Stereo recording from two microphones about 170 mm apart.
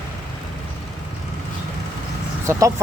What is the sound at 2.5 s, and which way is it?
Speech, 15° right (ahead or behind).